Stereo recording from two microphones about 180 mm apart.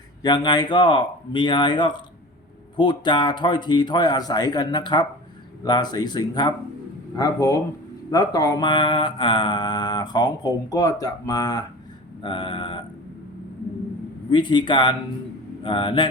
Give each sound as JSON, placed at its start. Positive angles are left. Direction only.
{"t": 0.2, "sound": "mantra", "side_deg": 25}
{"t": 14.3, "sound": "mantra", "side_deg": 25}